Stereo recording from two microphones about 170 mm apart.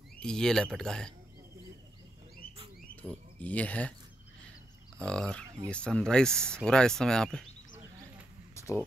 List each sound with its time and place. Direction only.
0.2 s speech: 5° left (ahead or behind)
3.0 s speech: 10° left (ahead or behind)
4.9 s speech: 5° left (ahead or behind)
8.5 s a sound: 15° left (ahead or behind)